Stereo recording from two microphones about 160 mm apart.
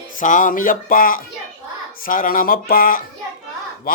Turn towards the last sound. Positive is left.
turn(degrees=60)  # may be behind; listen again after turning